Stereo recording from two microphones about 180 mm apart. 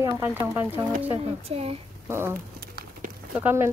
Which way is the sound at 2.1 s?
15° right (ahead or behind).